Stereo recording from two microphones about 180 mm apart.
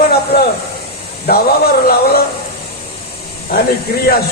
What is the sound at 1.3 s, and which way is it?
Speech, 60° left (ahead or behind).